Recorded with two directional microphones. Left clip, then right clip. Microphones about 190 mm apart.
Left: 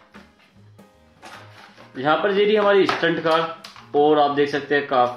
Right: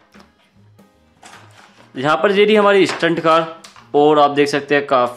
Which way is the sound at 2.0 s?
45° right (ahead or behind).